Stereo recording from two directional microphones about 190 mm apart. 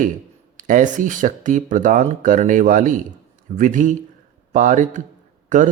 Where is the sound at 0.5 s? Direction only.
40° right (ahead or behind).